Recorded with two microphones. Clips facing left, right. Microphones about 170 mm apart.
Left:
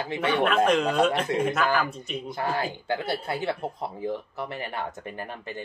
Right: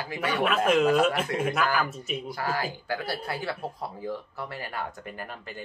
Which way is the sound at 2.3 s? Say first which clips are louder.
Left 3 dB; 25° left (ahead or behind).